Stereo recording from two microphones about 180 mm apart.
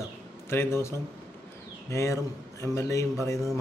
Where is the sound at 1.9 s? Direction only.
15° left (ahead or behind).